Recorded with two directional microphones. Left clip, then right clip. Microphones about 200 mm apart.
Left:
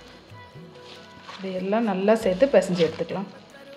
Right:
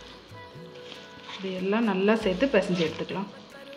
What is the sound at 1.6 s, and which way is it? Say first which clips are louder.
Speech: left 2 dB; 30° left (ahead or behind).